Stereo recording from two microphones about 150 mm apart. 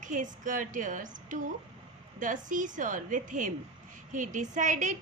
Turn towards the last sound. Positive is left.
turn(degrees=-55)  # may be behind; listen again after turning